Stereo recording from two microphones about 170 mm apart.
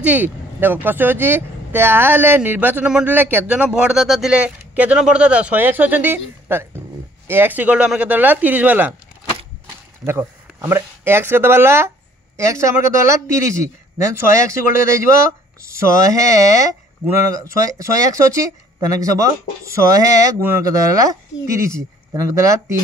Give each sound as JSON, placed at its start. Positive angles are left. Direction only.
{"t": 0.0, "sound": "speech", "side_deg": -10}
{"t": 10.0, "sound": "speech", "side_deg": -15}